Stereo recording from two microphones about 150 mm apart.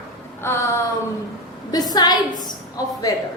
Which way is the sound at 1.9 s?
25° left (ahead or behind).